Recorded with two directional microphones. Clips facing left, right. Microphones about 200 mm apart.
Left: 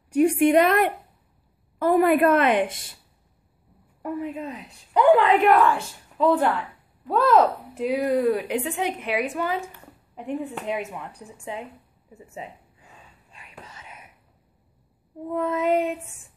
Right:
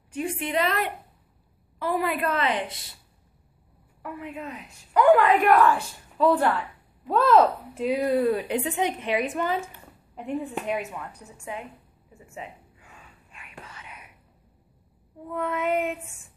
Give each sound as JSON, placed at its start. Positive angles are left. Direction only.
{"t": 0.2, "sound": "a woman's voice", "side_deg": 50}
{"t": 4.0, "sound": "a woman's voice", "side_deg": 40}
{"t": 15.2, "sound": "a woman's voice", "side_deg": 25}
{"t": 15.6, "sound": "child singing", "side_deg": 35}